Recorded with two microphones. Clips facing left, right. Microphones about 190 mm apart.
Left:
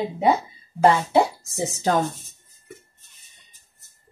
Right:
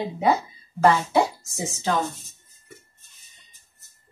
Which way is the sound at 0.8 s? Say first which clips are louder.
Left 2 dB; 30° left (ahead or behind).